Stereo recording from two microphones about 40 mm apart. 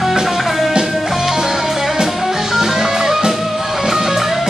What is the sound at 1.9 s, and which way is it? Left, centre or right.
Music, centre.